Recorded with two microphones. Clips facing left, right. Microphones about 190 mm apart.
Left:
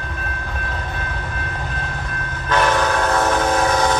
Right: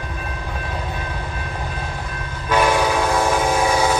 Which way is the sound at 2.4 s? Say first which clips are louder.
Right 1 dB; 10° right (ahead or behind).